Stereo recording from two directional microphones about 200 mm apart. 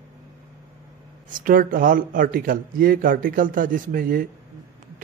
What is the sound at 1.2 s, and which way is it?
A man's voice, 45° right (ahead or behind).